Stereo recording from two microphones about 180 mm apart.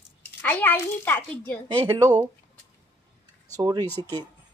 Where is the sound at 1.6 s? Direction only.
30° right (ahead or behind).